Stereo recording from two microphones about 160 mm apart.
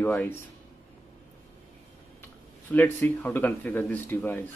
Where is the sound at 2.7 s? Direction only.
10° left (ahead or behind).